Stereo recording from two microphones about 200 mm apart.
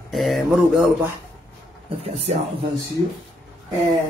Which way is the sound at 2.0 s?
30° right (ahead or behind).